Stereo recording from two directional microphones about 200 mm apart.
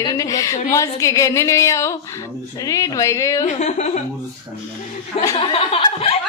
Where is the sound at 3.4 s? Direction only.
35° left (ahead or behind).